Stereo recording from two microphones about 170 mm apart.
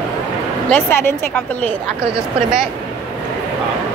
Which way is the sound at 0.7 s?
10° left (ahead or behind).